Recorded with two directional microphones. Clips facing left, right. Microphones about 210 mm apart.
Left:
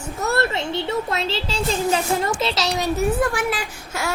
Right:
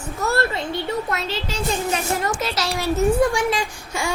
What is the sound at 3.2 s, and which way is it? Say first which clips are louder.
Speech: right 3 dB; 5° left (ahead or behind).